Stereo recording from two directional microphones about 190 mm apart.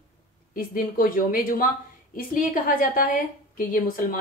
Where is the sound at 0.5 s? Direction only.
45° left (ahead or behind).